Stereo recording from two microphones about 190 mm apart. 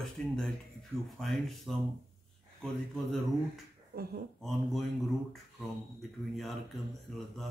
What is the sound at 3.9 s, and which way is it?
Speech, 55° right (ahead or behind).